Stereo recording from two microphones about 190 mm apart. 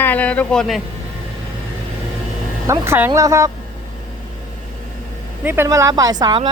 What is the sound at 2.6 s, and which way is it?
Speech, 15° right (ahead or behind).